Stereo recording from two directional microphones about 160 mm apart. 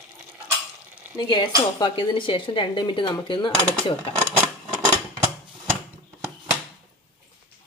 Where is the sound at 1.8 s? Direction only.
30° left (ahead or behind).